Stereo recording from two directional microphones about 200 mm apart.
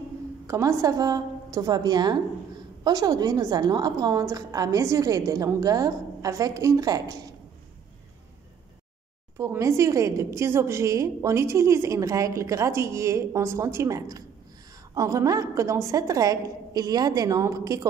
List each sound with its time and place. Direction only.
0.5 s a woman's voice: 15° right (ahead or behind)
9.4 s a woman's voice: 15° right (ahead or behind)